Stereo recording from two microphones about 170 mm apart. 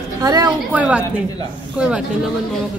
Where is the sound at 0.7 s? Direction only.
10° right (ahead or behind).